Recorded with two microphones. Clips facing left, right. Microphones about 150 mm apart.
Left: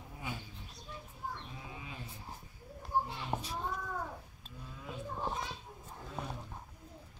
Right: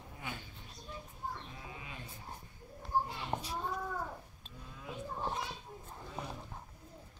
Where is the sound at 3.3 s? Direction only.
5° left (ahead or behind).